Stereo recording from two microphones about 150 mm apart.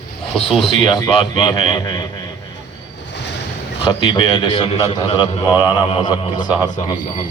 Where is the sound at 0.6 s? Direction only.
30° left (ahead or behind).